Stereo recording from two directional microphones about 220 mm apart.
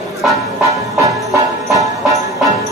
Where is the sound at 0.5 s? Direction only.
15° right (ahead or behind).